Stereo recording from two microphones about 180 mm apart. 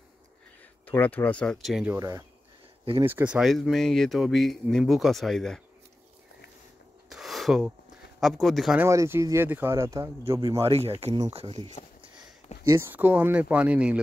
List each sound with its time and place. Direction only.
0.8 s speech: 10° left (ahead or behind)
2.0 s speech: 20° right (ahead or behind); by 5.6 s centre (ahead or behind)
7.1 s a sound: centre (ahead or behind)
8.2 s speech: centre (ahead or behind)
8.8 s speech: 15° right (ahead or behind)
10.6 s speech: 35° right (ahead or behind)
12.6 s speech: 15° right (ahead or behind)